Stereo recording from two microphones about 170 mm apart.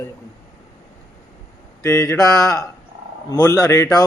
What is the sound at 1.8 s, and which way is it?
A man's voice, 15° left (ahead or behind).